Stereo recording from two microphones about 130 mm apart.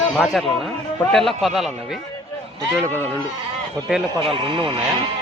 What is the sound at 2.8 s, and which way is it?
Speech, 15° left (ahead or behind).